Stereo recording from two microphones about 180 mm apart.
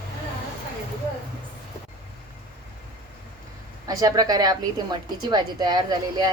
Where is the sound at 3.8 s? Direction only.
20° right (ahead or behind).